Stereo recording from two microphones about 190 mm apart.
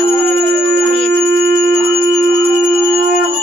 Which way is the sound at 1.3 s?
50° right (ahead or behind).